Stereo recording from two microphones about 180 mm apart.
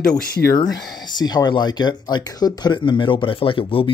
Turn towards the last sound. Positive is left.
turn(degrees=30)  # may be behind; listen again after turning